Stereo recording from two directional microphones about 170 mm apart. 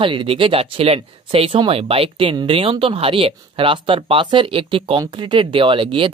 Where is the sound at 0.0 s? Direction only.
30° right (ahead or behind).